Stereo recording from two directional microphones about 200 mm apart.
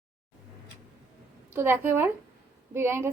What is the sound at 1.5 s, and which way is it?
A woman's voice, 10° right (ahead or behind).